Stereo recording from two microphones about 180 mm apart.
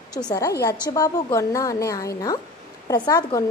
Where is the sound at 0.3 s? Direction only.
20° left (ahead or behind).